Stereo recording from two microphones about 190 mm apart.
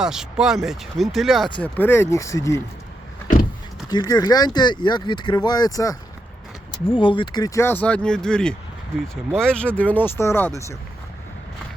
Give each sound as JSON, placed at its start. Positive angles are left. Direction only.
{"t": 0.0, "sound": "speech", "side_deg": -5}
{"t": 3.8, "sound": "speech", "side_deg": 20}